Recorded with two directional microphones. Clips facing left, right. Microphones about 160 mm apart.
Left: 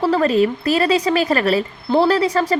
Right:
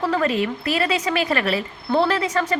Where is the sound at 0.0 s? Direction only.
35° left (ahead or behind).